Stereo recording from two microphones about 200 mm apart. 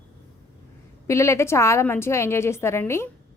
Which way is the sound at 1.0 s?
15° left (ahead or behind).